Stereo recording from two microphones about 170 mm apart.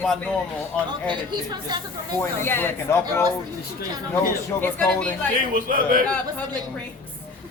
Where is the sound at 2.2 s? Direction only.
15° left (ahead or behind).